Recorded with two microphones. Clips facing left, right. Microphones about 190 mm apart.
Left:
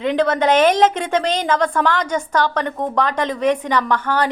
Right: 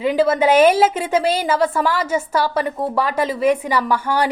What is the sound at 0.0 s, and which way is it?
A woman's voice, 5° right (ahead or behind).